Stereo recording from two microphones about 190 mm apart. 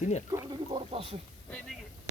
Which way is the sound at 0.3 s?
20° right (ahead or behind).